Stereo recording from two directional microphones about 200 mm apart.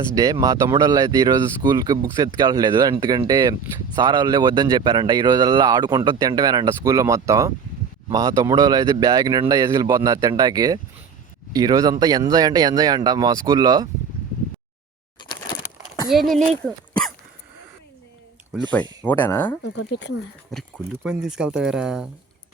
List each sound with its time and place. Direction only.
0.2 s speech: 15° right (ahead or behind)
16.0 s speech: centre (ahead or behind)
19.0 s speech: 10° left (ahead or behind)
19.6 s speech: 65° left (ahead or behind)
20.5 s speech: centre (ahead or behind)